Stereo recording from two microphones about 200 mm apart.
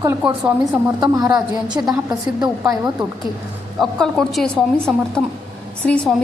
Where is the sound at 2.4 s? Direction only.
20° right (ahead or behind).